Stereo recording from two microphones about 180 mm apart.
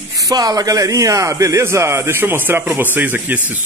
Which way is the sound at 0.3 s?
20° right (ahead or behind).